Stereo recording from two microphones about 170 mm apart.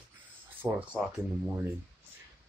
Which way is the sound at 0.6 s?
10° right (ahead or behind).